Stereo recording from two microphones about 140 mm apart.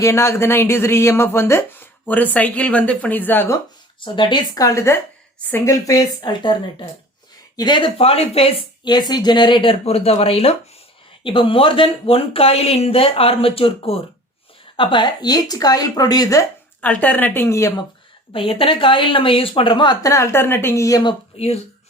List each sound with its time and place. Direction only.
0.0 s speech: 20° left (ahead or behind)
4.0 s speech: 35° left (ahead or behind)
8.9 s speech: 30° left (ahead or behind)
16.8 s speech: 10° left (ahead or behind)
18.3 s speech: 40° left (ahead or behind)
21.3 s speech: 45° left (ahead or behind)